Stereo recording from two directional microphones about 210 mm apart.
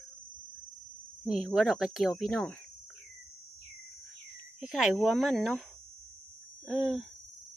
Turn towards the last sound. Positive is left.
turn(degrees=0)  # may be behind; listen again after turning